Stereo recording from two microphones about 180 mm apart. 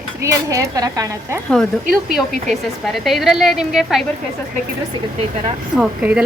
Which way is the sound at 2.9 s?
Centre (ahead or behind).